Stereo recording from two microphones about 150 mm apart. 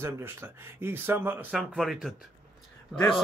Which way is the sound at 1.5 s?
Centre (ahead or behind).